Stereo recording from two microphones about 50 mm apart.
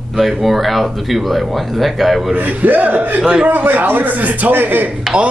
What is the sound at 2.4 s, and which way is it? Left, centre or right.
A man's voice, right.